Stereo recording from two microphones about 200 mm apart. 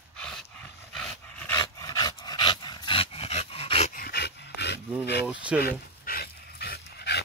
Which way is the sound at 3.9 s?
50° left (ahead or behind).